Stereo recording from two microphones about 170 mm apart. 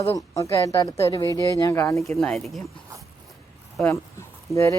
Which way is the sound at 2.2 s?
Centre (ahead or behind).